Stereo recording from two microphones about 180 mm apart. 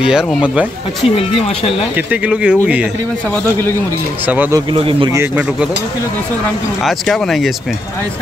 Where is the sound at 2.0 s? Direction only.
5° right (ahead or behind).